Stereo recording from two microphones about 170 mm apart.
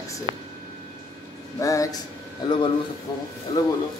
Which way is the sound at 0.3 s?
30° right (ahead or behind).